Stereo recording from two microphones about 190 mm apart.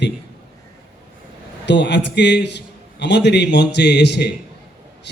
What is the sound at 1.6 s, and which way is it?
Speech, 65° left (ahead or behind).